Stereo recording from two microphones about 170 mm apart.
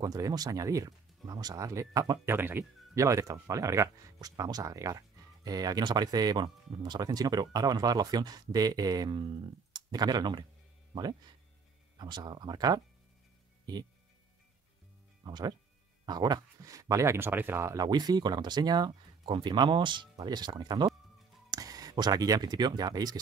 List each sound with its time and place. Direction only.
0.0 s speech: 20° right (ahead or behind)
12.0 s speech: 25° right (ahead or behind)
15.2 s speech: 25° right (ahead or behind)